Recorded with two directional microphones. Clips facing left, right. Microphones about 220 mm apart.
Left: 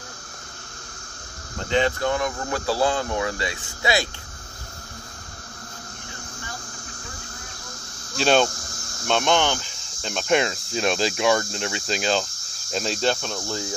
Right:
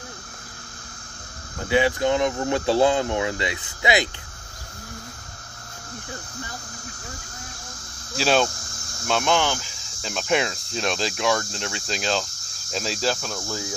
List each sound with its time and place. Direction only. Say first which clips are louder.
1.7 s speech: right 2 dB; 10° right (ahead or behind)
8.2 s speech: left 2 dB; centre (ahead or behind)